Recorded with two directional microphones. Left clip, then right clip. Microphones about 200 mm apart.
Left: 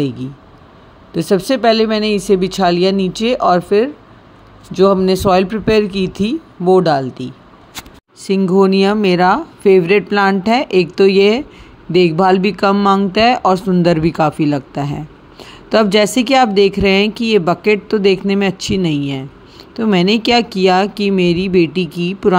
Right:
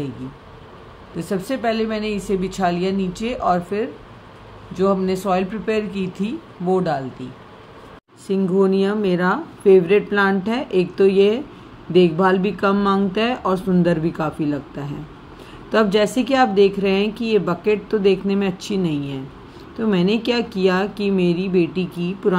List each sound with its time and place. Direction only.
1.1 s speech: 45° left (ahead or behind)
8.3 s speech: 50° left (ahead or behind)